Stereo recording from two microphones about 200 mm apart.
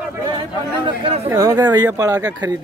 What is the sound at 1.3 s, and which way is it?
Speech, 15° right (ahead or behind).